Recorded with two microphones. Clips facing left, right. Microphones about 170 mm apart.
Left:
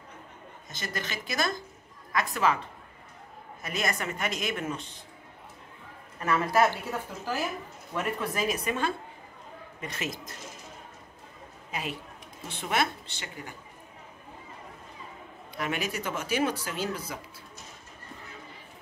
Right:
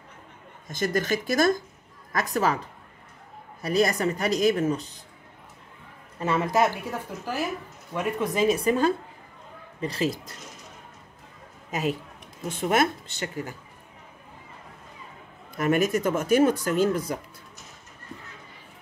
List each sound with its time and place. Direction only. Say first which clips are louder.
0.7 s speech: right 11 dB; 45° right (ahead or behind)
3.6 s speech: right 9 dB; 35° right (ahead or behind)
6.1 s speech: right 2 dB; 25° right (ahead or behind)
7.9 s speech: right 4 dB; 15° right (ahead or behind); by 10.3 s 30° right (ahead or behind)
11.7 s speech: right 8 dB; 40° right (ahead or behind)
15.5 s speech: right 9 dB; 45° right (ahead or behind)